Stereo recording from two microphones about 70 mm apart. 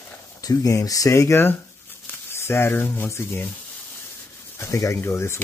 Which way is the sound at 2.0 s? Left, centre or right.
Left.